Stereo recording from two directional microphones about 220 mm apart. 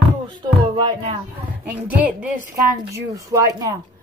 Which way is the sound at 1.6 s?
5° right (ahead or behind).